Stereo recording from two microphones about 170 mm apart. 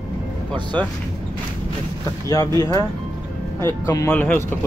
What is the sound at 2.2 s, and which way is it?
Speech, 20° left (ahead or behind).